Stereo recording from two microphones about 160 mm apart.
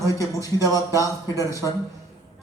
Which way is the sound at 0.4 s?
20° left (ahead or behind).